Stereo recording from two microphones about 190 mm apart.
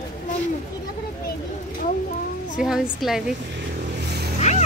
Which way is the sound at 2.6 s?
Centre (ahead or behind).